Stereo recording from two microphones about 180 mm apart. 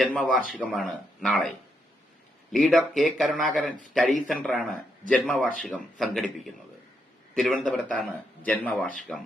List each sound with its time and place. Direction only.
0.4 s a man's voice: 5° left (ahead or behind)